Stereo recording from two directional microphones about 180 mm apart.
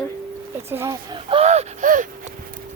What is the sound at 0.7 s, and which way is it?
Speech, 15° right (ahead or behind).